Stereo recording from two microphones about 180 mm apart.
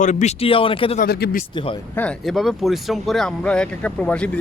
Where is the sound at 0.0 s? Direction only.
40° left (ahead or behind).